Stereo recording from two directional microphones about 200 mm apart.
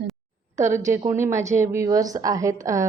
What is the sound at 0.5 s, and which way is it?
A woman's voice, 15° right (ahead or behind).